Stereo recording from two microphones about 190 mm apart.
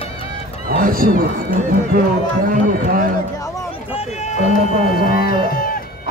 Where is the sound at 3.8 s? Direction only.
35° left (ahead or behind).